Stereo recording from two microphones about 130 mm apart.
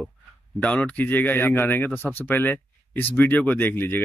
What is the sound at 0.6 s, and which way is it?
Speech, 10° left (ahead or behind).